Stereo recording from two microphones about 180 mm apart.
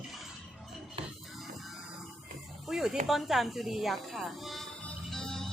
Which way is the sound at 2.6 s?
5° right (ahead or behind).